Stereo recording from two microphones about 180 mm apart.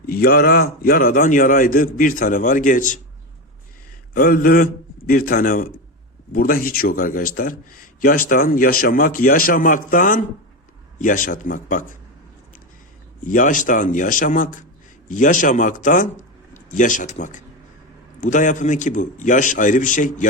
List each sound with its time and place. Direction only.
0.1 s a man's voice: 60° left (ahead or behind)
4.1 s a man's voice: 50° left (ahead or behind)
13.2 s a man's voice: 45° left (ahead or behind)